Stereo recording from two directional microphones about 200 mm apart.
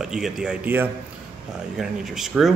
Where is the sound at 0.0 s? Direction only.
5° right (ahead or behind).